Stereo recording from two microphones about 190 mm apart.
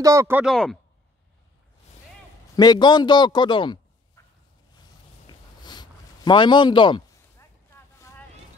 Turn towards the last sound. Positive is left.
turn(degrees=25)  # may be behind; listen again after turning